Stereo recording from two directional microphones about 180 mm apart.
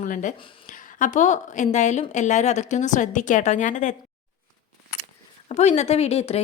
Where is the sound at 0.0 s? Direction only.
45° left (ahead or behind).